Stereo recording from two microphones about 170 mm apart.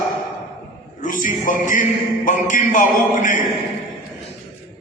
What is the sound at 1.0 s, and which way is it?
A man's voice, 50° left (ahead or behind).